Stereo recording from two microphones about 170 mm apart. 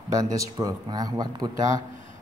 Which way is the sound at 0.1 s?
20° right (ahead or behind).